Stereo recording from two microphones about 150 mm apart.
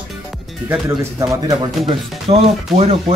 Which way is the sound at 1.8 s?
40° right (ahead or behind).